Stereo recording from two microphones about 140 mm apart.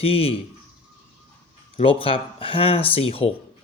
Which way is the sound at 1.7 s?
40° left (ahead or behind).